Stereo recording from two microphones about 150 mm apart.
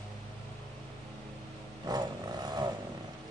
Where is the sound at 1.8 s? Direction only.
25° right (ahead or behind).